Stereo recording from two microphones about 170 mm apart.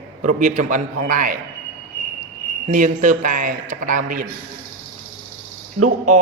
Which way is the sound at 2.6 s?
50° right (ahead or behind).